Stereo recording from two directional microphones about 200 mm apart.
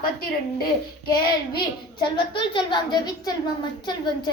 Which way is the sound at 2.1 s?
25° left (ahead or behind).